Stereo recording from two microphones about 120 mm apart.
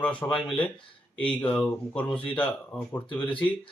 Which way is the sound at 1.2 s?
50° left (ahead or behind).